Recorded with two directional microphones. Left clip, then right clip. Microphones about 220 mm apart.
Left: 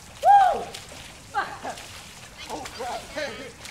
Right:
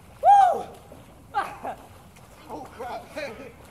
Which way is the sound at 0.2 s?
15° right (ahead or behind).